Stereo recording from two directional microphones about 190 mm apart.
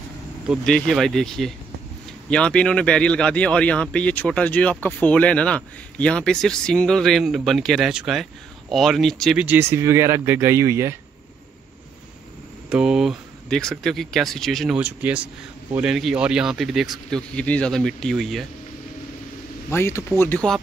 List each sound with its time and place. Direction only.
0.5 s speech: 5° left (ahead or behind); by 11.0 s 15° right (ahead or behind)
12.6 s speech: 5° right (ahead or behind)
19.7 s speech: 15° left (ahead or behind)